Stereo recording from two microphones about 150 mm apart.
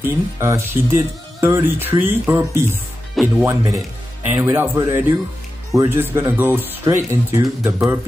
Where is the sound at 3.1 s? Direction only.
Centre (ahead or behind).